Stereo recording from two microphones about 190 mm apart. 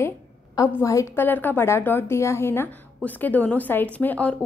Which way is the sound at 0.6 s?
15° left (ahead or behind).